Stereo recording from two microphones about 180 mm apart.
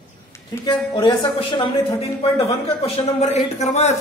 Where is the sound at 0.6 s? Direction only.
25° left (ahead or behind).